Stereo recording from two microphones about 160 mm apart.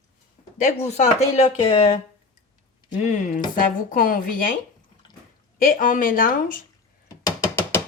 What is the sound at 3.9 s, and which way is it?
Speech, 60° left (ahead or behind).